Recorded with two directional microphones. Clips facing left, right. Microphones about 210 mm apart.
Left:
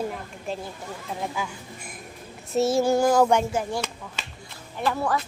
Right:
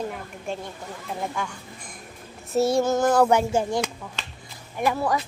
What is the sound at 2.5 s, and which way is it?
Child singing, centre (ahead or behind).